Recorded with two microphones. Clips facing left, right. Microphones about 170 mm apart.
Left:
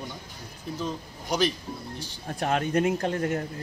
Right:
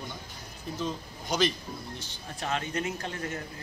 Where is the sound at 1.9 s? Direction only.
50° left (ahead or behind).